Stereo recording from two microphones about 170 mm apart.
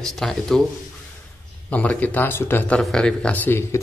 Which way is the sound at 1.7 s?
10° left (ahead or behind).